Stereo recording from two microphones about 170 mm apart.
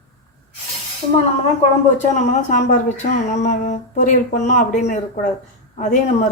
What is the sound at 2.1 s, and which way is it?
Speech, 45° left (ahead or behind).